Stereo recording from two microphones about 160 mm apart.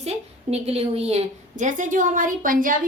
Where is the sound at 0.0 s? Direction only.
40° right (ahead or behind).